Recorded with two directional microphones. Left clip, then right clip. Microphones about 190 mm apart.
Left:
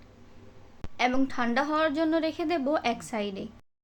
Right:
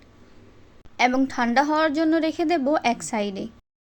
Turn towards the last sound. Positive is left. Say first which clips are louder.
# right 6 dB
turn(degrees=-35)  # may be behind; listen again after turning